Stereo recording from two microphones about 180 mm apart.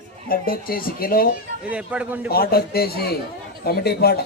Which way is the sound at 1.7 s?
5° right (ahead or behind).